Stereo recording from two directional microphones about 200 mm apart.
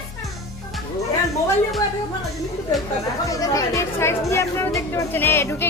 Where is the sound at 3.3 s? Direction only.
15° left (ahead or behind).